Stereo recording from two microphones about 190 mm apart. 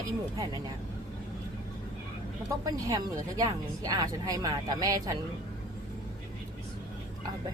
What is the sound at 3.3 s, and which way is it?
Speech, 20° right (ahead or behind).